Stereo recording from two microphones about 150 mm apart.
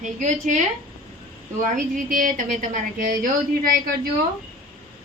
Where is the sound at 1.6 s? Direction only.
65° right (ahead or behind).